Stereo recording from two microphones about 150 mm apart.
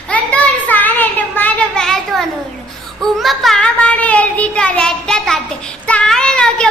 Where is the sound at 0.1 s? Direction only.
10° left (ahead or behind).